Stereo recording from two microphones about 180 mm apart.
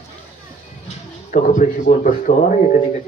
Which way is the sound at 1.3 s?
45° left (ahead or behind).